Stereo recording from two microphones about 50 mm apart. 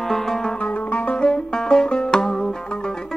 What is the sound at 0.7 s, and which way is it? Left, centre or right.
Music, left.